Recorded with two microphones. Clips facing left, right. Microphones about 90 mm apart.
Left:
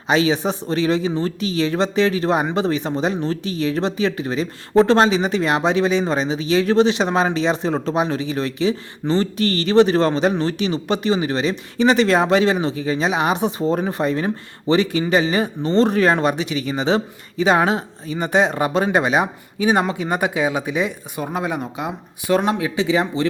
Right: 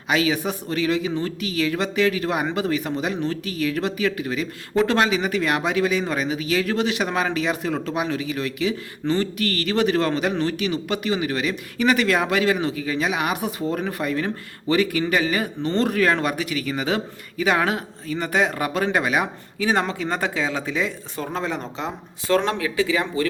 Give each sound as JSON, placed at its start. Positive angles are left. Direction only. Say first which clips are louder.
{"t": 0.1, "sound": "speech", "louder": "left 4 dB", "side_deg": 30}